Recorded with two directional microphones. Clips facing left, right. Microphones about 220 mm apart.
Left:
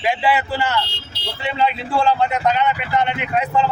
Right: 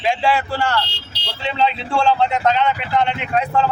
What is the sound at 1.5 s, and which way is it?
Speech, 5° left (ahead or behind).